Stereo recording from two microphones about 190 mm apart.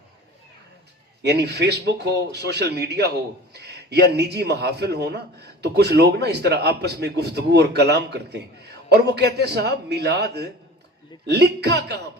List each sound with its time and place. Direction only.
1.2 s a man's voice: 60° right (ahead or behind)